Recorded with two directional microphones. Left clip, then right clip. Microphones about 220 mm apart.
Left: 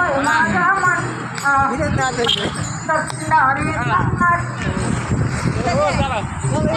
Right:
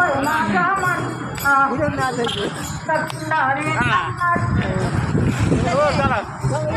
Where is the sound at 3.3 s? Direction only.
20° right (ahead or behind).